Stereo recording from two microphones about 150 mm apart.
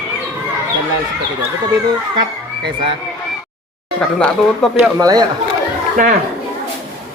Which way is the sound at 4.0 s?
5° left (ahead or behind).